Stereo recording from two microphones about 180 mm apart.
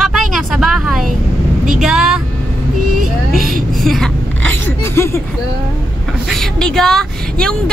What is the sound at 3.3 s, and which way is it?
Speech, 50° right (ahead or behind).